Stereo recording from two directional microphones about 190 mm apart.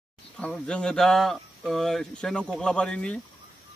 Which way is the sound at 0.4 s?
5° left (ahead or behind).